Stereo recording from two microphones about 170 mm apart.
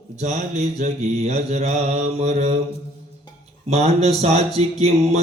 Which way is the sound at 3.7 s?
40° right (ahead or behind).